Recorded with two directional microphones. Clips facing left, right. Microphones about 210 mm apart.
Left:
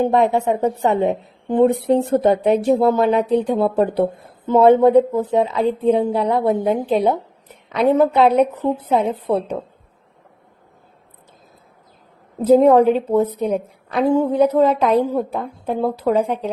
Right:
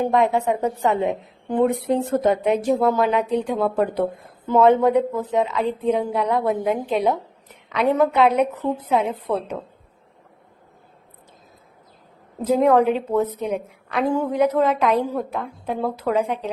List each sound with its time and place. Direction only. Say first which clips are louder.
0.0 s a woman's voice: left 3 dB; 30° left (ahead or behind)
12.5 s a woman's voice: left 5 dB; 35° left (ahead or behind)